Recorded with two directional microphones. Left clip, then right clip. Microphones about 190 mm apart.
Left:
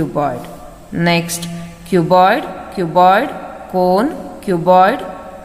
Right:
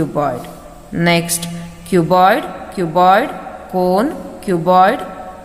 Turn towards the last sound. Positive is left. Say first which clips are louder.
# left 1 dB
turn(degrees=0)  # may be behind; listen again after turning